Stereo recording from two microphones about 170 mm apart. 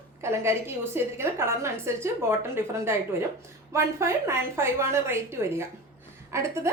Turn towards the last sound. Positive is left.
turn(degrees=-15)  # may be behind; listen again after turning